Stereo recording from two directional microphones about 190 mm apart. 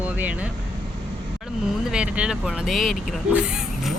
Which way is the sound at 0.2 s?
10° right (ahead or behind).